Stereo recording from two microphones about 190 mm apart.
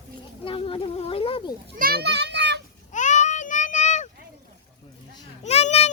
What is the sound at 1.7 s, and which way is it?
Children playing, 55° right (ahead or behind).